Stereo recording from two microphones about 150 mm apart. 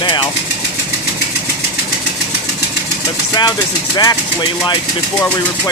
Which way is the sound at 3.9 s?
25° left (ahead or behind).